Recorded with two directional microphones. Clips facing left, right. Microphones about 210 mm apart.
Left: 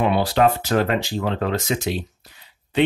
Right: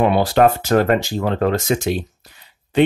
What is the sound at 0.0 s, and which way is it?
Speech, 45° right (ahead or behind).